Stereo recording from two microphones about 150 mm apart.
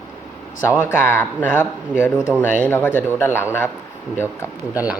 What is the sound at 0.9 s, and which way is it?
Speech, 15° left (ahead or behind).